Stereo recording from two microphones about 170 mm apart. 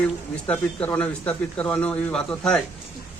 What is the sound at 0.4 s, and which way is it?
Speech, 10° left (ahead or behind).